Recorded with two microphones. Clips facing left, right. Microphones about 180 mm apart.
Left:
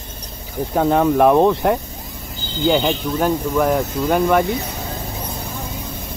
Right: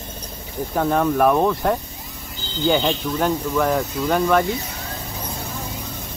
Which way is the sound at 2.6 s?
5° left (ahead or behind).